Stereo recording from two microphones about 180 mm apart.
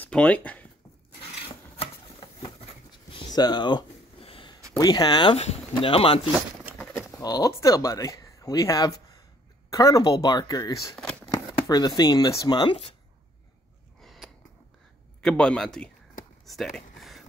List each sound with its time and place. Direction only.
0.0 s speech: 10° left (ahead or behind)
1.2 s a sound: 30° left (ahead or behind)
4.7 s speech: 20° left (ahead or behind)
7.2 s speech: 20° left (ahead or behind)
11.0 s a sound: 5° left (ahead or behind)
11.2 s speech: 20° left (ahead or behind)
14.0 s sniff: centre (ahead or behind)
15.2 s a man's voice: 5° left (ahead or behind)
16.4 s a sound: centre (ahead or behind)